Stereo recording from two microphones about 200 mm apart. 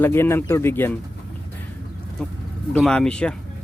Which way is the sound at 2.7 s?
5° left (ahead or behind).